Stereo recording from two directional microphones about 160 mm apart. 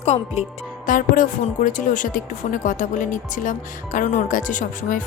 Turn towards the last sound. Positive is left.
turn(degrees=55)  # may be behind; listen again after turning